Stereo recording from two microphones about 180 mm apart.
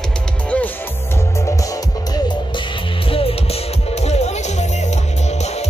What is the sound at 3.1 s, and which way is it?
Music, 30° left (ahead or behind).